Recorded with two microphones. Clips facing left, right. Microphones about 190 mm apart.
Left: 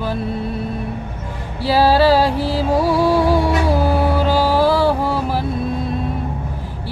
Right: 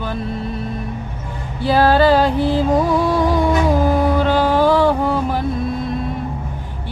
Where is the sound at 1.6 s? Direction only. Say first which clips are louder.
Even; 5° left (ahead or behind).